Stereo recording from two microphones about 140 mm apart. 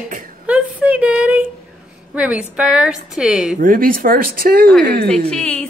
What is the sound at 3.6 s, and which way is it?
Speech, 90° right.